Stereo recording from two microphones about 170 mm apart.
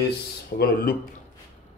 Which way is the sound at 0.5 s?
60° left (ahead or behind).